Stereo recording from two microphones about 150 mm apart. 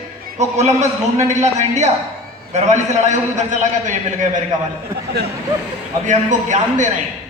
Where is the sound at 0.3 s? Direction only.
50° right (ahead or behind).